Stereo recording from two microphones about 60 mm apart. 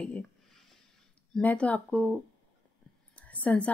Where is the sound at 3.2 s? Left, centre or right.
Left.